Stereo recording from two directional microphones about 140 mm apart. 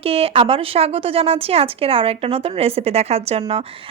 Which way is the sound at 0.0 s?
45° right (ahead or behind).